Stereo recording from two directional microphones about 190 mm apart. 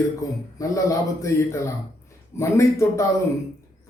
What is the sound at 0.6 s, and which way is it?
Speech, 15° left (ahead or behind).